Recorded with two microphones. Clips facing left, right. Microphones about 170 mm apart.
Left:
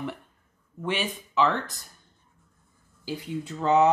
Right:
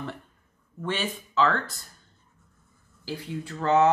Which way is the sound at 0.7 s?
15° left (ahead or behind).